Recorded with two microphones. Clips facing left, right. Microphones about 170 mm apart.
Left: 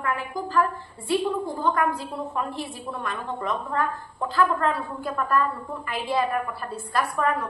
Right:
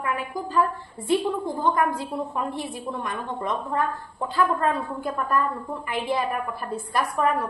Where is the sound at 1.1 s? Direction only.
20° right (ahead or behind).